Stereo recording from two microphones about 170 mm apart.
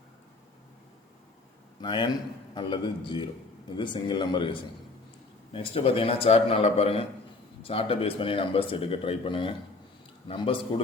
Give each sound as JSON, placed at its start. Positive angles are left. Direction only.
{"t": 1.8, "sound": "speech", "side_deg": 25}